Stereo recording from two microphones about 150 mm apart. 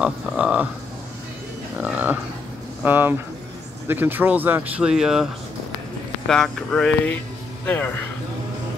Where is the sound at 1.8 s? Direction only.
10° right (ahead or behind).